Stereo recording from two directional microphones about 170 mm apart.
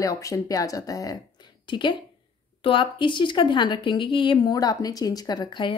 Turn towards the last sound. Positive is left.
turn(degrees=25)  # may be behind; listen again after turning